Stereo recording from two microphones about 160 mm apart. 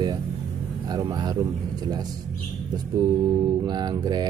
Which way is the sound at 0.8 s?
25° right (ahead or behind).